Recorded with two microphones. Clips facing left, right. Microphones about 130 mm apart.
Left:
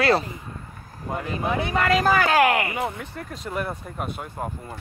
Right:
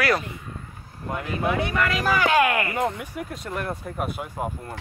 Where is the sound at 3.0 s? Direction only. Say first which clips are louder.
Right 2 dB; 10° right (ahead or behind).